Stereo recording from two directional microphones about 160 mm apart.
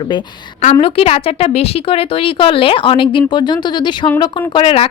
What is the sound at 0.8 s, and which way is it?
Speech, 40° left (ahead or behind).